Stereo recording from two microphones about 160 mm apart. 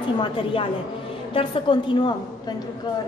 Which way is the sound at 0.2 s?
30° left (ahead or behind).